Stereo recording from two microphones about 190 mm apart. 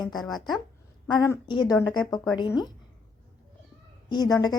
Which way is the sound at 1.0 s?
20° left (ahead or behind).